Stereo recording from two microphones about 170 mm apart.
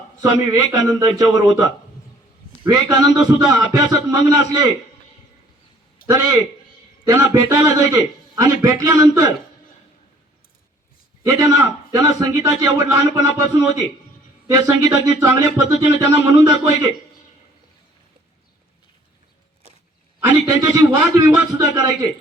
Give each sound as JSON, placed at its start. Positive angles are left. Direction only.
{"t": 0.2, "sound": "speech", "side_deg": -20}
{"t": 6.1, "sound": "speech", "side_deg": -20}
{"t": 11.3, "sound": "speech", "side_deg": -20}
{"t": 14.4, "sound": "speech", "side_deg": -20}
{"t": 20.3, "sound": "speech", "side_deg": -20}